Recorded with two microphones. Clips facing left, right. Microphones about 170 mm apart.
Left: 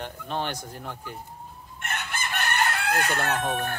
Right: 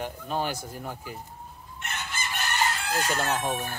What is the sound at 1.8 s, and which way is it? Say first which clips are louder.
Chicken: left 2 dB; 60° left (ahead or behind).